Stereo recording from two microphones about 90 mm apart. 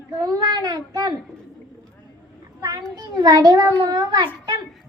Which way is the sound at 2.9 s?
45° right (ahead or behind).